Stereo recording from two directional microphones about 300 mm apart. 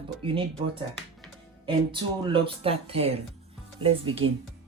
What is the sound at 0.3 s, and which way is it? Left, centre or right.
Speech, centre.